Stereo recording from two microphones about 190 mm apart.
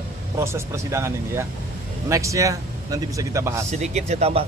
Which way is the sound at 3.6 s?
35° right (ahead or behind).